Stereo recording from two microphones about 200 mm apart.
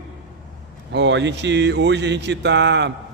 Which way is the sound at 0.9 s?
60° right (ahead or behind).